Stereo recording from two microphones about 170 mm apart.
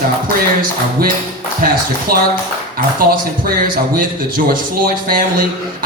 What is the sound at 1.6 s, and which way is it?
Speech, 55° right (ahead or behind).